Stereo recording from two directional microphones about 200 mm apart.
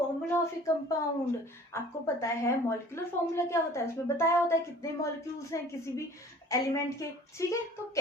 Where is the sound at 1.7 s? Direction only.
15° left (ahead or behind).